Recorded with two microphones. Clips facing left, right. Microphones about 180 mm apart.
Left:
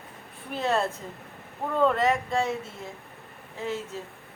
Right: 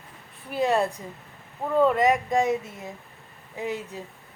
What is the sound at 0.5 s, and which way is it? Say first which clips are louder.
Speech: right 3 dB; 15° right (ahead or behind).